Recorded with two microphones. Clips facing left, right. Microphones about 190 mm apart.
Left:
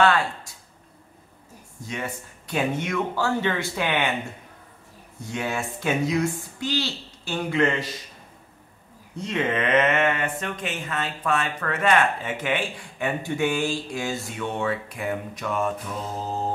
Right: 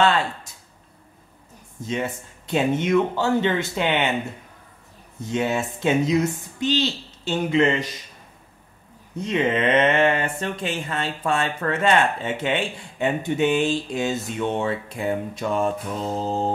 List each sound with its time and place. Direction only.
0.0 s a sound: 25° right (ahead or behind)
1.8 s speech: 25° right (ahead or behind)
5.2 s speech: 25° right (ahead or behind)
9.1 s speech: 20° right (ahead or behind)